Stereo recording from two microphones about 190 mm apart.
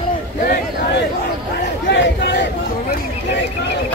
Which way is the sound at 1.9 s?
70° left (ahead or behind).